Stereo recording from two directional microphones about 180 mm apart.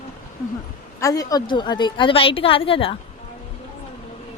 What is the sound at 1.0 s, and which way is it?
A woman's voice, 20° left (ahead or behind).